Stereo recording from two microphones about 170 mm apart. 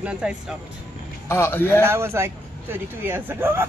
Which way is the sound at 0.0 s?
5° right (ahead or behind).